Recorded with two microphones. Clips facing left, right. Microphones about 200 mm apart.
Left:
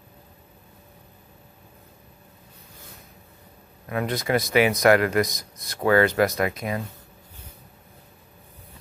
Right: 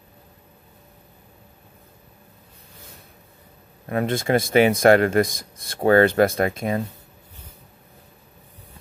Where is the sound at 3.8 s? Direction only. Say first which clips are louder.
Right 4 dB; 30° right (ahead or behind).